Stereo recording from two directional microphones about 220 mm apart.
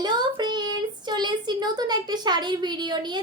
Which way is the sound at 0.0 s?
20° right (ahead or behind).